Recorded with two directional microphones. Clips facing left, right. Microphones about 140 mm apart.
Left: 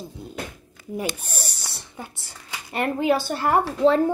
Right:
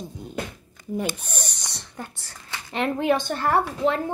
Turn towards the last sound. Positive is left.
turn(degrees=35)  # may be behind; listen again after turning